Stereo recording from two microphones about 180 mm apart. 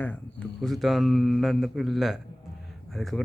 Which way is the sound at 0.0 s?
5° left (ahead or behind).